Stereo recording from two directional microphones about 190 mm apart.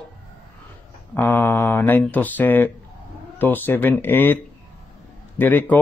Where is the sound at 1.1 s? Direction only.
10° left (ahead or behind).